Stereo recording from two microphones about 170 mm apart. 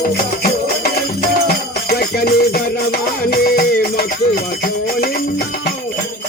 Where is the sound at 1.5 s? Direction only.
65° left (ahead or behind).